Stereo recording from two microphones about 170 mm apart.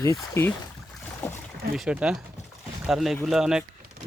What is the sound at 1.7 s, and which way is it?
Speech, 5° right (ahead or behind).